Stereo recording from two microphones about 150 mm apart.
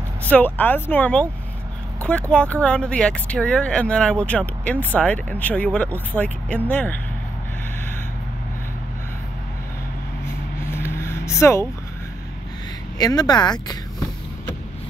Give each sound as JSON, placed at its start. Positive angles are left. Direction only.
{"t": 0.2, "sound": "speech", "side_deg": 10}
{"t": 10.2, "sound": "vehicle", "side_deg": 15}
{"t": 12.9, "sound": "speech", "side_deg": 25}